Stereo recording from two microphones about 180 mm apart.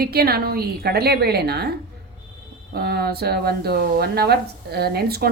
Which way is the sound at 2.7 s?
65° right (ahead or behind).